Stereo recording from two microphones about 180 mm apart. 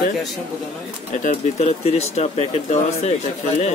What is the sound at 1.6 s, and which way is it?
Speech, 35° left (ahead or behind).